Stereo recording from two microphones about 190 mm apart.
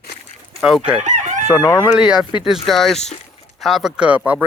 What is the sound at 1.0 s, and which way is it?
Chicken, 35° right (ahead or behind).